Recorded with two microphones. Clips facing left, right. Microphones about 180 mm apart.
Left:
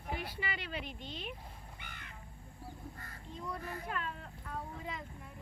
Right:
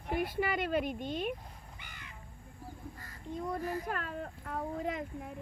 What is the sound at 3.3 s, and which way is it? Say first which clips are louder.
Speech: right 7 dB; 45° right (ahead or behind).